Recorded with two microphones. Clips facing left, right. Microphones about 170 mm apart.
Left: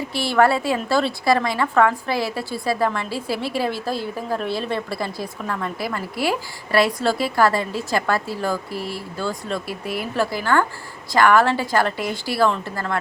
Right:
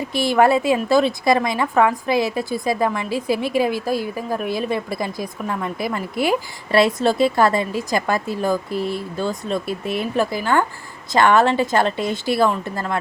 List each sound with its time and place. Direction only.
0.1 s a woman's voice: 15° right (ahead or behind)